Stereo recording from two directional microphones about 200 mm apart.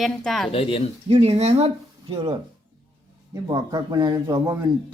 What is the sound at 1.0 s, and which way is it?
A man's voice, 30° right (ahead or behind).